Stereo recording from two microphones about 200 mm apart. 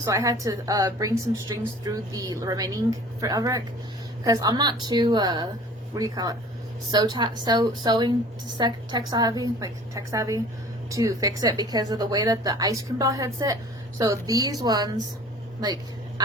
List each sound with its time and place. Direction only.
0.0 s a woman's voice: 15° right (ahead or behind)